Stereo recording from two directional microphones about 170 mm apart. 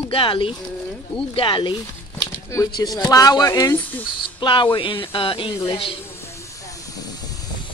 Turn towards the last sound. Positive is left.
turn(degrees=20)  # may be behind; listen again after turning